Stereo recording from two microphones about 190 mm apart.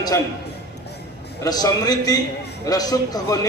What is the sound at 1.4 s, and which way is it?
A man's voice, 20° left (ahead or behind).